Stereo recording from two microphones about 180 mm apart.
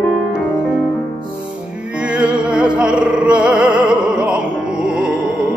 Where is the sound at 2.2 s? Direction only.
5° right (ahead or behind).